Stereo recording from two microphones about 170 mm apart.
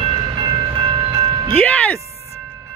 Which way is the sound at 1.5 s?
10° left (ahead or behind).